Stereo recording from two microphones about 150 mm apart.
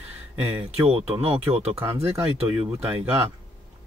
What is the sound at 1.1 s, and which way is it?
Speech, 40° right (ahead or behind).